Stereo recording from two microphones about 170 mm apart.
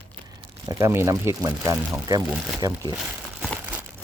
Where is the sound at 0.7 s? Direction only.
15° right (ahead or behind).